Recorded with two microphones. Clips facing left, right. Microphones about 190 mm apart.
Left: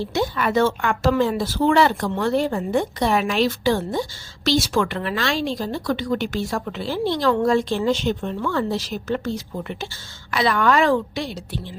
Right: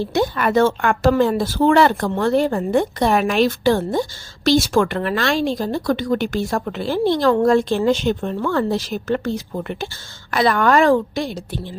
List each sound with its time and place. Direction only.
0.0 s a woman's voice: 50° right (ahead or behind)